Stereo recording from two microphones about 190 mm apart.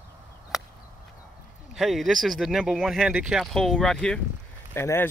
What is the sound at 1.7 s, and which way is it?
Speech, centre (ahead or behind).